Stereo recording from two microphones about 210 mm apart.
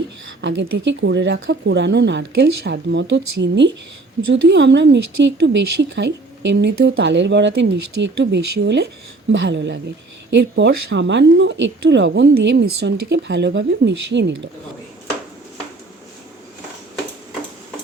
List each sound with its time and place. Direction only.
0.4 s speech: 60° right (ahead or behind)